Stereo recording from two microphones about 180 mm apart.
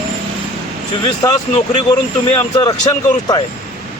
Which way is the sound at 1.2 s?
15° left (ahead or behind).